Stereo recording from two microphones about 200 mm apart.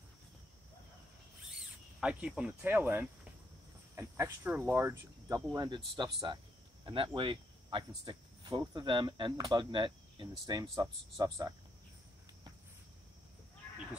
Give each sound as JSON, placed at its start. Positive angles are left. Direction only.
{"t": 2.0, "sound": "speech", "side_deg": -5}
{"t": 6.2, "sound": "cricket", "side_deg": -25}
{"t": 7.2, "sound": "speech", "side_deg": -25}